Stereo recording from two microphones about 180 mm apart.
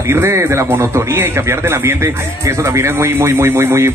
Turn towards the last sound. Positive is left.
turn(degrees=-15)  # may be behind; listen again after turning